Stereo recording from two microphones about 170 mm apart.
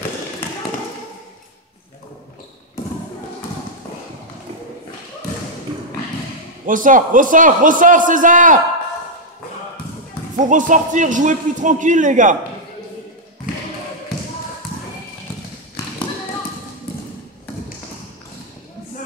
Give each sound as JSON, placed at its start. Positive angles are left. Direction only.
{"t": 6.6, "sound": "a man's voice", "side_deg": -50}
{"t": 10.3, "sound": "a man's voice", "side_deg": -50}